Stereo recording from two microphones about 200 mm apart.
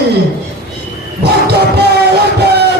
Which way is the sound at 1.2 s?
55° right (ahead or behind).